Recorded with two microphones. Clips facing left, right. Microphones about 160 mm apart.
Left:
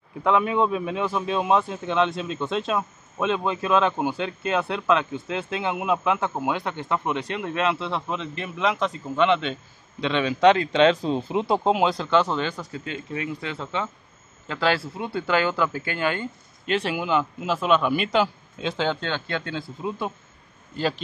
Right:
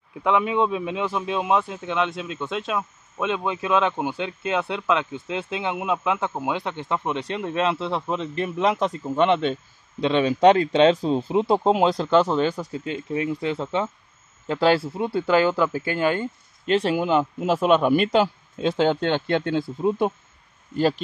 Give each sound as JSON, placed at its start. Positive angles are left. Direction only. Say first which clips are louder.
{"t": 0.2, "sound": "speech", "louder": "even", "side_deg": -15}
{"t": 12.2, "sound": "speech", "louder": "right 4 dB", "side_deg": -5}
{"t": 15.1, "sound": "speech", "louder": "right 3 dB", "side_deg": -5}
{"t": 16.6, "sound": "speech", "louder": "right 4 dB", "side_deg": -35}
{"t": 17.4, "sound": "a man's voice", "louder": "right 4 dB", "side_deg": -45}
{"t": 18.9, "sound": "speech", "louder": "right 7 dB", "side_deg": -20}
{"t": 19.5, "sound": "a man's voice", "louder": "right 8 dB", "side_deg": -50}